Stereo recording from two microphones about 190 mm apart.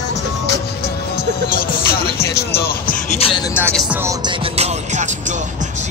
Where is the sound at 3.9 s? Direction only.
10° right (ahead or behind).